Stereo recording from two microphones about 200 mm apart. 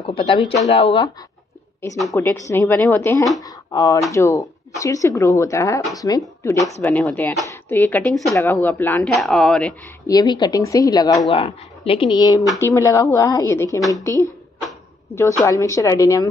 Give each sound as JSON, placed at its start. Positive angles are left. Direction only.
{"t": 0.0, "sound": "speech", "side_deg": 25}
{"t": 2.1, "sound": "speech", "side_deg": 15}
{"t": 10.0, "sound": "speech", "side_deg": 20}
{"t": 13.7, "sound": "a woman's voice", "side_deg": 0}
{"t": 15.4, "sound": "speech", "side_deg": 15}